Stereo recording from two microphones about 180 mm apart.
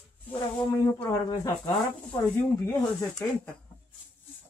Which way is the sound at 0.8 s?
15° left (ahead or behind).